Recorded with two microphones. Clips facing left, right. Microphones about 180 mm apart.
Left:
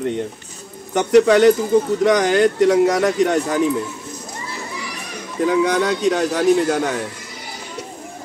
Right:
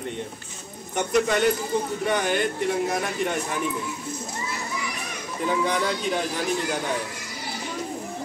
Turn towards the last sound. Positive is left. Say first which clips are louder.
# left 10 dB
turn(degrees=85)